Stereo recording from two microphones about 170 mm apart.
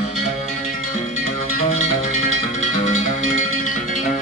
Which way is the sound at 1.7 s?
40° left (ahead or behind).